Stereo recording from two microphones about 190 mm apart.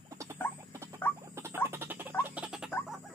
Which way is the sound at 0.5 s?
15° right (ahead or behind).